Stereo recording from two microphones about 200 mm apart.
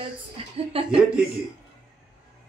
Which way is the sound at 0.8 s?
5° right (ahead or behind).